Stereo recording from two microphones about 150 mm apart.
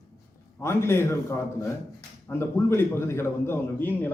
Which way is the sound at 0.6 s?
15° left (ahead or behind).